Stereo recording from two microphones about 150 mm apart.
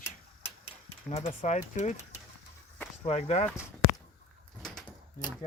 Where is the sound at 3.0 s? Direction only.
45° left (ahead or behind).